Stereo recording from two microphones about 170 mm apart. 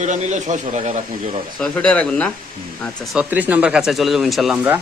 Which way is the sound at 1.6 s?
5° left (ahead or behind).